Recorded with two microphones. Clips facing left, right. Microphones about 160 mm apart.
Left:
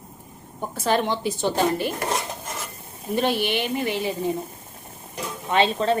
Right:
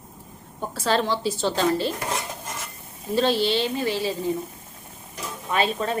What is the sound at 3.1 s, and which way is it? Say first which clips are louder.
A woman's voice: right 2 dB; 15° left (ahead or behind).